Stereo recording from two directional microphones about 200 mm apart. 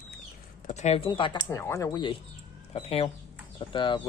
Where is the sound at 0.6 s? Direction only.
35° left (ahead or behind).